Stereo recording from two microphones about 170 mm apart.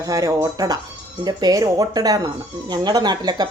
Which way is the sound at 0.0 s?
20° right (ahead or behind).